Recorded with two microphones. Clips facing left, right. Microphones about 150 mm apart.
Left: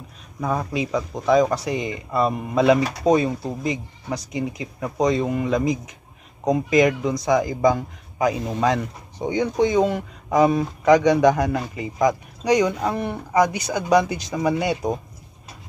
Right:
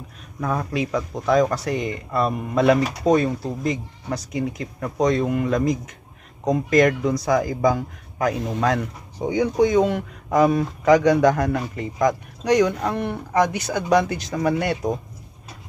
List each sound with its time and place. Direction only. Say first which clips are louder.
0.4 s speech: even; 5° left (ahead or behind)